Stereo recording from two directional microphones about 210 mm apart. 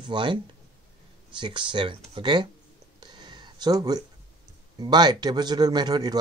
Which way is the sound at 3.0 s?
20° right (ahead or behind).